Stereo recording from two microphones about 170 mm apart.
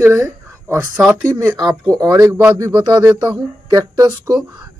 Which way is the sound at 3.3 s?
25° right (ahead or behind).